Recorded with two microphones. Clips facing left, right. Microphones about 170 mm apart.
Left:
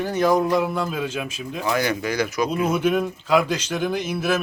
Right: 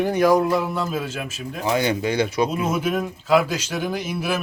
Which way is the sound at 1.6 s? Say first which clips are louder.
Right 2 dB; 25° right (ahead or behind).